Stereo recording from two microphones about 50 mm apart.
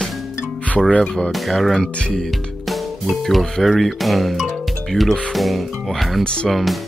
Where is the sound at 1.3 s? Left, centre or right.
Centre.